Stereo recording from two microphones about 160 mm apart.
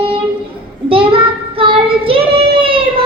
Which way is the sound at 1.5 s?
35° right (ahead or behind).